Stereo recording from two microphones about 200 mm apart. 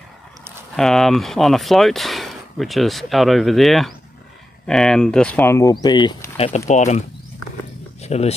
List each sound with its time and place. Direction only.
0.7 s speech: centre (ahead or behind); by 8.4 s 30° left (ahead or behind)